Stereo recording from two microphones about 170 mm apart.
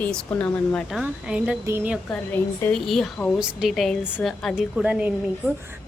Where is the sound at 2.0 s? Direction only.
10° left (ahead or behind).